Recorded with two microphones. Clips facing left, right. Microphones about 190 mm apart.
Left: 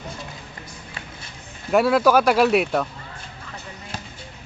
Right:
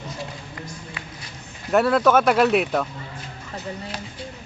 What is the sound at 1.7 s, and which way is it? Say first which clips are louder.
Speech: left 1 dB; 5° left (ahead or behind).